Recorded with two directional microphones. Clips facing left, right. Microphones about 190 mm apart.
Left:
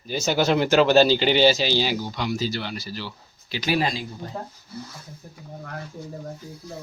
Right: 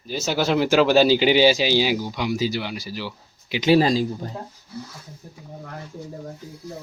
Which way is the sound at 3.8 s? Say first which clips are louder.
Right 6 dB; 35° right (ahead or behind).